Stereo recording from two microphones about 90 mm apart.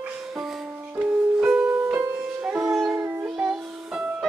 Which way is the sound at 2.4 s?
10° right (ahead or behind).